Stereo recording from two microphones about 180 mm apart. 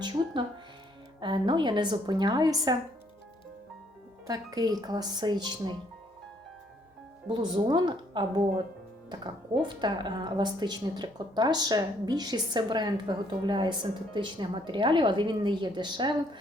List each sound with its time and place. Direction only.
0.0 s a woman's voice: 25° right (ahead or behind)
4.3 s a woman's voice: 20° right (ahead or behind)
7.3 s a woman's voice: 25° right (ahead or behind)
9.6 s a woman's voice: 25° right (ahead or behind)